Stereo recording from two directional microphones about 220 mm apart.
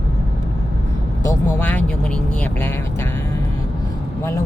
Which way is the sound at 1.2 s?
10° left (ahead or behind).